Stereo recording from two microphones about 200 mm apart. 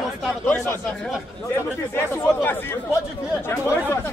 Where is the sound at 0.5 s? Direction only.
10° left (ahead or behind).